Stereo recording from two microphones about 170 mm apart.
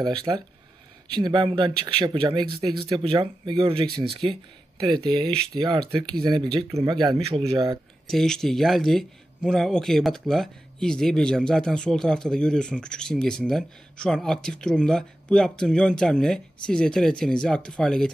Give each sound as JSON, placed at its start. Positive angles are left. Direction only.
{"t": 0.0, "sound": "speech", "side_deg": -25}
{"t": 8.1, "sound": "a man's voice", "side_deg": 5}